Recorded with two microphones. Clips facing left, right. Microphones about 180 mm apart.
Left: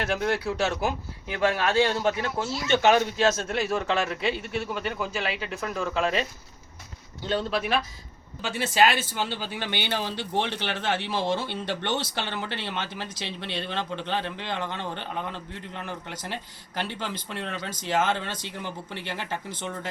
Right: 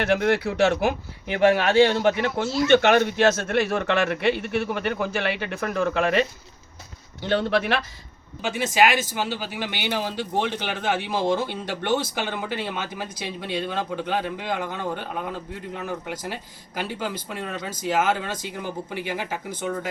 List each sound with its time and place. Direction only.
0.0 s speech: 65° right (ahead or behind)
8.4 s speech: 15° right (ahead or behind)